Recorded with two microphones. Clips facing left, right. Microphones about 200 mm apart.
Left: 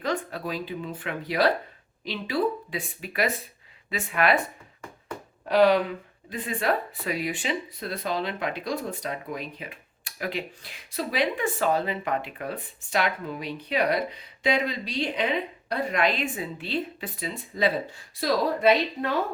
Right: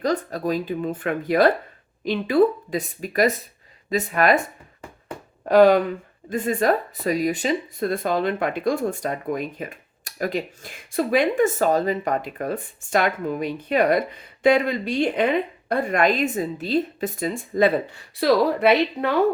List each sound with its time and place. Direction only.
0.0 s speech: 40° right (ahead or behind)
5.5 s speech: 45° right (ahead or behind); by 19.1 s 65° right (ahead or behind)